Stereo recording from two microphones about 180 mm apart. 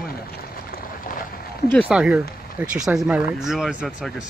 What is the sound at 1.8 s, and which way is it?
Speech, 5° right (ahead or behind).